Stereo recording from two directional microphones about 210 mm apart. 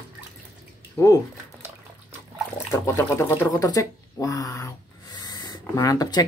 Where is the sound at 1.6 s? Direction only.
10° right (ahead or behind).